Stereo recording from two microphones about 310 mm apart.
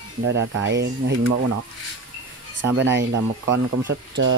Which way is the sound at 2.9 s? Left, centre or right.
Right.